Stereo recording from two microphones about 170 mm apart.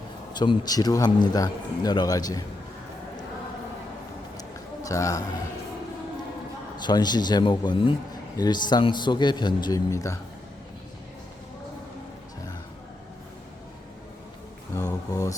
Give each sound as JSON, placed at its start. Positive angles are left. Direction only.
{"t": 0.3, "sound": "a man's voice", "side_deg": 30}
{"t": 4.4, "sound": "a sound", "side_deg": 20}
{"t": 6.8, "sound": "a man's voice", "side_deg": 25}
{"t": 14.8, "sound": "speech", "side_deg": 20}